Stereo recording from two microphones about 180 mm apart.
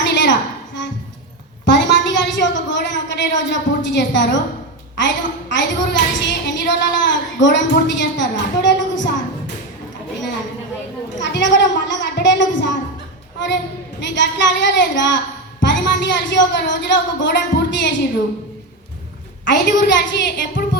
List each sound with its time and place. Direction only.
0.0 s a sound: 75° left (ahead or behind)
4.9 s a woman's voice: 80° left
11.2 s a child's voice: 80° left
14.0 s a woman's voice: 80° left
19.5 s a woman's voice: 80° left